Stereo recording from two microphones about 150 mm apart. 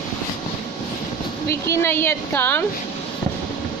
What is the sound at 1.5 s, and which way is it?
A woman's voice, 15° left (ahead or behind).